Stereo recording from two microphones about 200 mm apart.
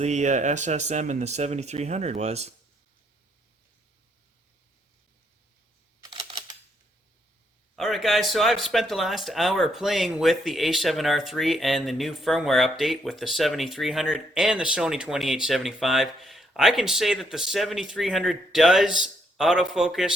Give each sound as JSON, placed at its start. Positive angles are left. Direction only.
{"t": 0.0, "sound": "speech", "side_deg": -35}
{"t": 6.0, "sound": "typing", "side_deg": -25}
{"t": 7.8, "sound": "speech", "side_deg": 0}